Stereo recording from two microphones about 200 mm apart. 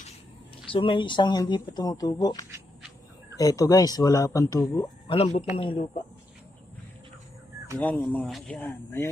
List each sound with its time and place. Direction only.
0.7 s speech: 25° left (ahead or behind)
5.0 s a man's voice: 30° left (ahead or behind)
7.8 s speech: 10° left (ahead or behind)